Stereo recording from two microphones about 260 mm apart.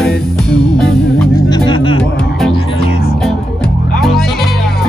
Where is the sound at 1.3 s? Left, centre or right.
Centre.